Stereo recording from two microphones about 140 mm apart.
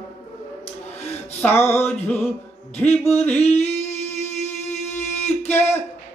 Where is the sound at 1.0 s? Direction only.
50° left (ahead or behind).